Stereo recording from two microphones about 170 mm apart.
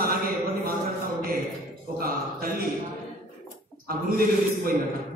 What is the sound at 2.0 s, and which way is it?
Speech, 60° right (ahead or behind).